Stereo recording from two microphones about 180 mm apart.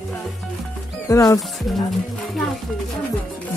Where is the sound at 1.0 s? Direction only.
20° left (ahead or behind).